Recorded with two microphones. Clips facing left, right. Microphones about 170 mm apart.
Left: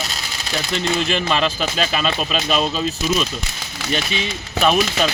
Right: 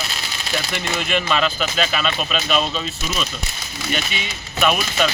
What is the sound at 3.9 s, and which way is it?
Speech, 30° left (ahead or behind).